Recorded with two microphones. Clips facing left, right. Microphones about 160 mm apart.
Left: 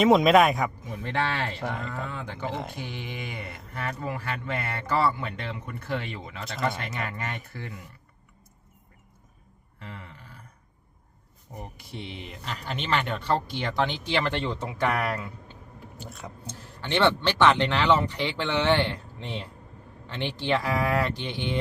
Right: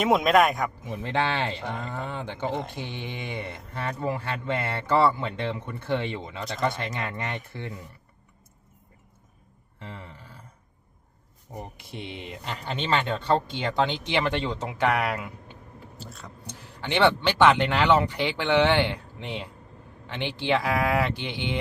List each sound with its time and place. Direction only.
0.0 s speech: centre (ahead or behind)
0.9 s speech: 25° right (ahead or behind)
2.5 s speech: 5° left (ahead or behind)
2.7 s speech: 25° right (ahead or behind)
9.8 s speech: 25° right (ahead or behind)
11.5 s speech: 20° right (ahead or behind)
16.6 s speech: 15° right (ahead or behind)